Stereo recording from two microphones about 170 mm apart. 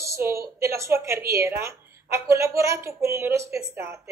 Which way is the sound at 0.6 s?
15° right (ahead or behind).